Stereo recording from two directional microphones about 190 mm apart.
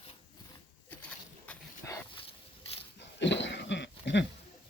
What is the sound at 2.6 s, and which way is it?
Dog, 30° left (ahead or behind).